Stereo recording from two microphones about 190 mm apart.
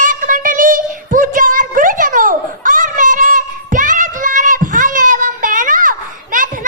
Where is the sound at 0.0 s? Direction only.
45° right (ahead or behind).